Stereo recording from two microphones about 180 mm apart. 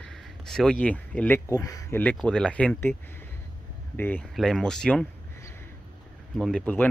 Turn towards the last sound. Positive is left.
turn(degrees=5)  # may be behind; listen again after turning